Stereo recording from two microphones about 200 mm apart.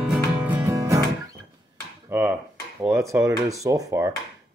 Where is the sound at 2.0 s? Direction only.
10° right (ahead or behind).